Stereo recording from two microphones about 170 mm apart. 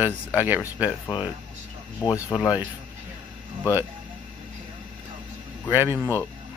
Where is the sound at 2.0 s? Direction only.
20° left (ahead or behind).